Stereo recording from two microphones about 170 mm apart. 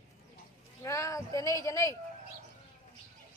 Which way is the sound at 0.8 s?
20° left (ahead or behind).